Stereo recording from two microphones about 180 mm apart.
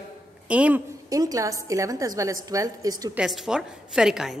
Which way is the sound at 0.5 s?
10° right (ahead or behind).